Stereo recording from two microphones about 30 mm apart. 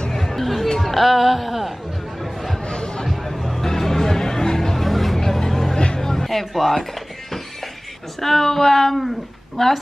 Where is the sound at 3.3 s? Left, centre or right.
Centre.